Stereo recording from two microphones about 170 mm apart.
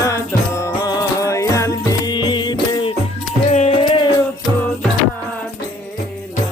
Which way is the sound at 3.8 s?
25° left (ahead or behind).